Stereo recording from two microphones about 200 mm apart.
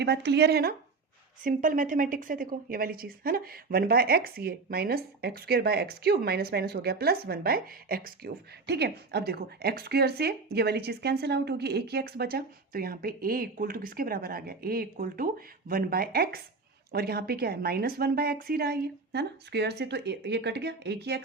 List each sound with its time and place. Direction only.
0.0 s speech: 60° right (ahead or behind)